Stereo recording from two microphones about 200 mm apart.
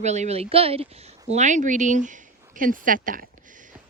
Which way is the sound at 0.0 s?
35° right (ahead or behind).